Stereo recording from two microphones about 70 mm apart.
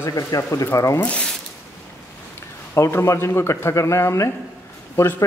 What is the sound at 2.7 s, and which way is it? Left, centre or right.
Speech, left.